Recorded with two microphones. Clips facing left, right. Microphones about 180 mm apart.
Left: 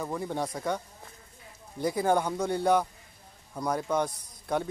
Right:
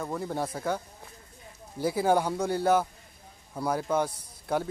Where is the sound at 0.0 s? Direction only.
Centre (ahead or behind).